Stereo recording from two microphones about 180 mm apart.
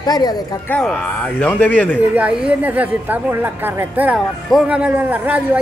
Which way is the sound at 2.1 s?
5° right (ahead or behind).